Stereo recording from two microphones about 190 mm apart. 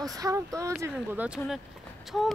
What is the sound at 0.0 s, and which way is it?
Speech, 20° right (ahead or behind).